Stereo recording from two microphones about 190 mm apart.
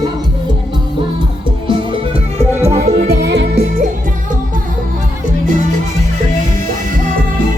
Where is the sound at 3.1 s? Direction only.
60° right (ahead or behind).